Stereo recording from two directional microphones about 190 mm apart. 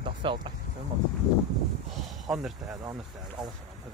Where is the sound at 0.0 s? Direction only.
25° right (ahead or behind).